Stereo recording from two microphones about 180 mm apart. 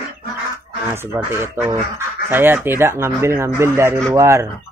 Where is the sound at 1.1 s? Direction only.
10° right (ahead or behind).